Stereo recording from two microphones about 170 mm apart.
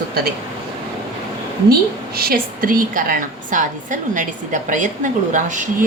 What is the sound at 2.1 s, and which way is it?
A woman's voice, 60° right (ahead or behind).